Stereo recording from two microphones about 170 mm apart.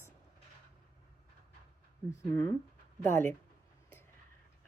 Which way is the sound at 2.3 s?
15° left (ahead or behind).